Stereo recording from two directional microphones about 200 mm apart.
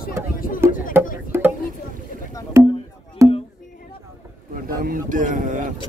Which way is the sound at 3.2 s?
15° right (ahead or behind).